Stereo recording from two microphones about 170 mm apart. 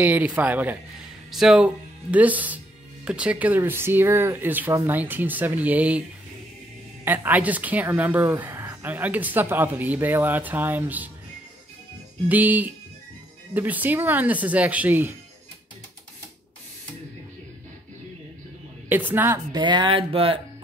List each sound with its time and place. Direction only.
0.0 s a woman's voice: 10° right (ahead or behind)
7.1 s a woman's voice: 10° right (ahead or behind)
12.3 s a woman's voice: 10° right (ahead or behind)
18.9 s a woman's voice: 10° right (ahead or behind)
19.5 s speech: 25° right (ahead or behind)